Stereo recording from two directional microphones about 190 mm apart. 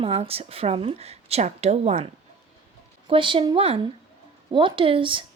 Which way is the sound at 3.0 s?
25° right (ahead or behind).